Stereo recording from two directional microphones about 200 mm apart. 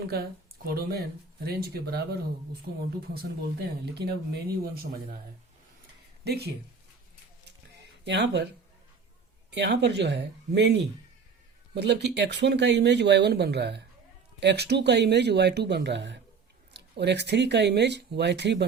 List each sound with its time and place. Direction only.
0.1 s speech: 50° right (ahead or behind)
6.2 s speech: 55° right (ahead or behind)
8.0 s speech: 60° right (ahead or behind)
9.5 s speech: 60° right (ahead or behind)